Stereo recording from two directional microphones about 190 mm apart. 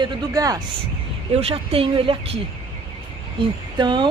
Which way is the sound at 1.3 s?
30° right (ahead or behind).